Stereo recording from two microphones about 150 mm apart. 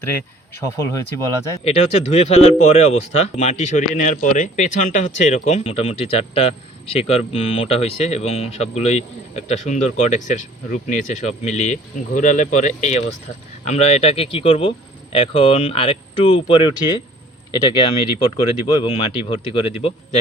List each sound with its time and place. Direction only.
0.6 s speech: 20° left (ahead or behind)
1.6 s speech: 45° left (ahead or behind)